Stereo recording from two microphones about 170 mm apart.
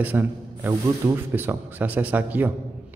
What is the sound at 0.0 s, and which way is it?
A man's voice, 10° right (ahead or behind).